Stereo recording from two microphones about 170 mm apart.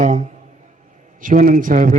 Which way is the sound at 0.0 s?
45° right (ahead or behind).